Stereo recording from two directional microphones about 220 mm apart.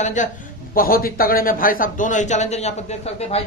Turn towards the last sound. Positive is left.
turn(degrees=30)  # may be behind; listen again after turning